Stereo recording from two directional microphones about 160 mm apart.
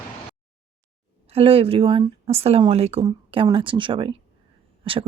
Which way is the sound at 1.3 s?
35° right (ahead or behind).